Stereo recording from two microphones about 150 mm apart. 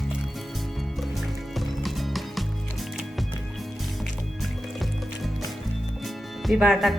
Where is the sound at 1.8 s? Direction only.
Centre (ahead or behind).